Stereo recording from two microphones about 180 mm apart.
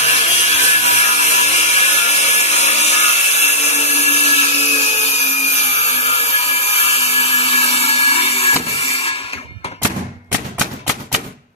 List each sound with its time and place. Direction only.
0.0 s ratchet: 35° left (ahead or behind)